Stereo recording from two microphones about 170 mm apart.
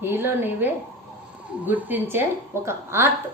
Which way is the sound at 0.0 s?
15° right (ahead or behind).